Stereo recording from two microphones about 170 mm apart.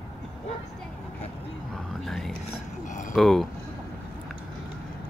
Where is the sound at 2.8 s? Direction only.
50° left (ahead or behind).